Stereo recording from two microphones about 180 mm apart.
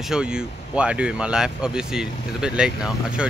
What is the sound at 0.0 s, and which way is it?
Speech, 5° right (ahead or behind).